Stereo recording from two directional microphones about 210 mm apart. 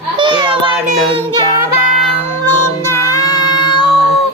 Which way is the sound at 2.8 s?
15° left (ahead or behind).